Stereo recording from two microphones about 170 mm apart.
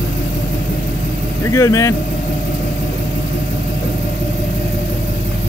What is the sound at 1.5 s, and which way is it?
Speech, 20° left (ahead or behind).